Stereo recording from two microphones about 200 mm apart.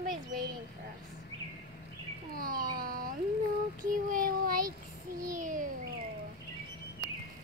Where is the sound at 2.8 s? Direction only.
45° right (ahead or behind).